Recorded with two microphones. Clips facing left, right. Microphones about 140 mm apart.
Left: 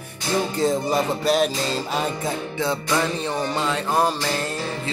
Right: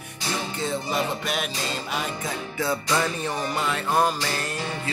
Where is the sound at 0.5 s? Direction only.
35° left (ahead or behind).